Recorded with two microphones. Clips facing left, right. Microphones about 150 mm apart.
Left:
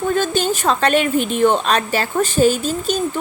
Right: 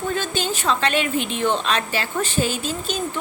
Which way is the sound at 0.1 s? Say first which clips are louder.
Left 8 dB; 45° left (ahead or behind).